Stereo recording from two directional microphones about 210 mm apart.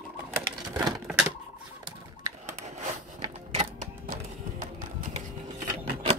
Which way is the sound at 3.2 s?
30° right (ahead or behind).